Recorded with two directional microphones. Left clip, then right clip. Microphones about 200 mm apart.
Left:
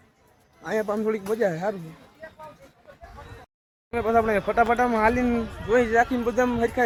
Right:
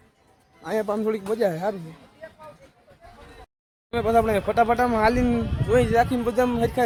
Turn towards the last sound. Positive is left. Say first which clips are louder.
# right 1 dB
turn(degrees=-10)  # may be behind; listen again after turning